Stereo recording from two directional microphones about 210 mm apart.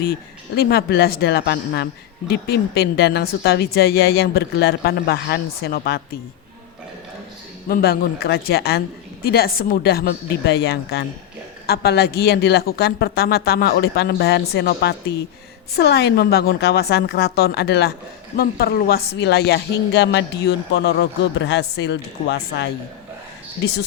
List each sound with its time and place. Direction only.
0.0 s speech: 45° left (ahead or behind)
7.7 s speech: 45° left (ahead or behind)